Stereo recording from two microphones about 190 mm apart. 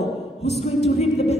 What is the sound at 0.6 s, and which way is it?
Music, 35° left (ahead or behind).